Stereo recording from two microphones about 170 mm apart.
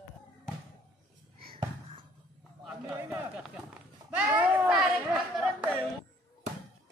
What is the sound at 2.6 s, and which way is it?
Run, 5° right (ahead or behind).